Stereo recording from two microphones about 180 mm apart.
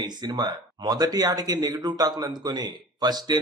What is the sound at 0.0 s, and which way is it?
A man's voice, 20° right (ahead or behind).